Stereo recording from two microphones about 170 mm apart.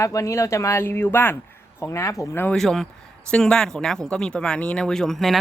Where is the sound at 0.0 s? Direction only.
20° left (ahead or behind).